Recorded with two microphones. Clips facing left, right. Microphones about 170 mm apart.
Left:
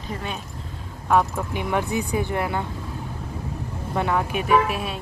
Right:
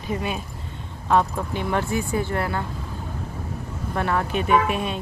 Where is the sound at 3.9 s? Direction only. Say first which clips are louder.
Even; 15° left (ahead or behind).